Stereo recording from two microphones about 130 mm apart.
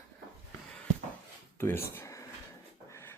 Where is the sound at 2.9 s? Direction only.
20° left (ahead or behind).